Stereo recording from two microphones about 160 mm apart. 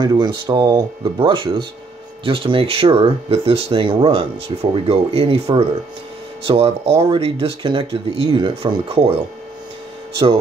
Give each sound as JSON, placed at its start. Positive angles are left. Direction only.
{"t": 0.0, "sound": "speech", "side_deg": -30}